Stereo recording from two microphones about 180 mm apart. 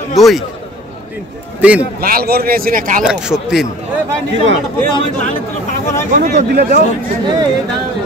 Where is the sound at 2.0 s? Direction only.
55° right (ahead or behind).